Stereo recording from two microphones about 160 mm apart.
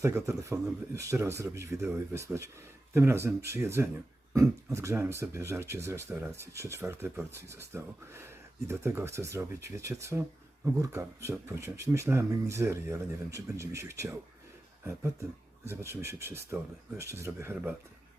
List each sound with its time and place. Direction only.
0.0 s speech: 20° right (ahead or behind)
15.6 s speech: 15° right (ahead or behind)